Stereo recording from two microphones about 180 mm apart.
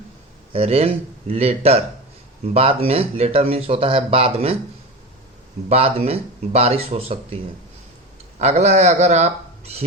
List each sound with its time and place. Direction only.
0.5 s speech: 35° right (ahead or behind)
5.6 s speech: 35° right (ahead or behind)
8.4 s a man's voice: 35° right (ahead or behind)